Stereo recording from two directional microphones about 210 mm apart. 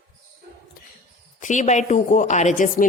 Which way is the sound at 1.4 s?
35° left (ahead or behind).